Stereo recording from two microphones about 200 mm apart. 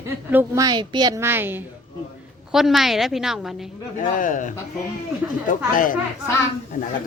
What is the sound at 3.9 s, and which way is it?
Speech, 40° left (ahead or behind).